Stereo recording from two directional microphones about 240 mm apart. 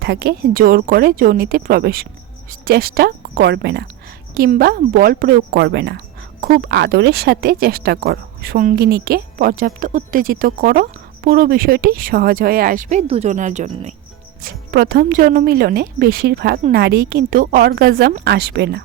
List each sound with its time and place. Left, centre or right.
0.0 s speech: right